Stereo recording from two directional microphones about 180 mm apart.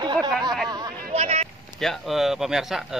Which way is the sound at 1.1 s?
35° right (ahead or behind).